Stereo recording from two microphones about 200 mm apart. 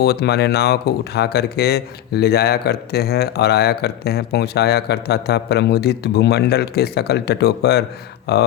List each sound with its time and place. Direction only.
0.0 s speech: 55° left (ahead or behind)